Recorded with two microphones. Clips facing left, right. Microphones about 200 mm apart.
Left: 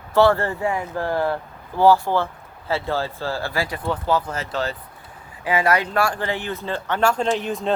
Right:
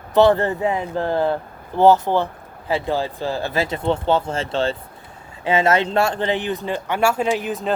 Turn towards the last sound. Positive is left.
turn(degrees=0)  # may be behind; listen again after turning